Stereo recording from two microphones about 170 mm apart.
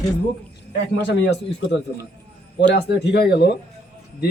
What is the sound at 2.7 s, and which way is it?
Speech, 75° left (ahead or behind).